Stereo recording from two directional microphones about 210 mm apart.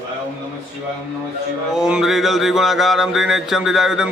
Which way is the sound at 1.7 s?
5° right (ahead or behind).